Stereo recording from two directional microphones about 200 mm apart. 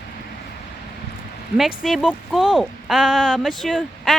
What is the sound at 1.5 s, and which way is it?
Speech, centre (ahead or behind).